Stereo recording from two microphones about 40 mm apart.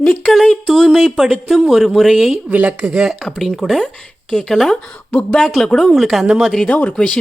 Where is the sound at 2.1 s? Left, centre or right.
Centre.